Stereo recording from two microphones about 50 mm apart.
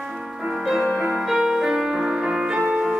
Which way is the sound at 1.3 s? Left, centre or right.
Centre.